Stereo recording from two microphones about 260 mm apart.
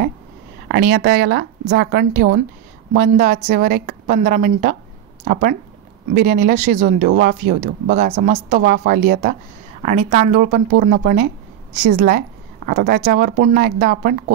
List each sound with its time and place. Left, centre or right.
0.7 s a woman's voice: right